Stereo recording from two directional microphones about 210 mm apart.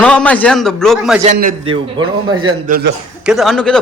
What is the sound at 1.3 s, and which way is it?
Speech, 40° right (ahead or behind).